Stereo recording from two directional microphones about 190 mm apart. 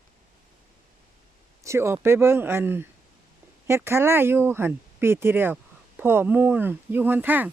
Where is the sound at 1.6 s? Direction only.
15° right (ahead or behind).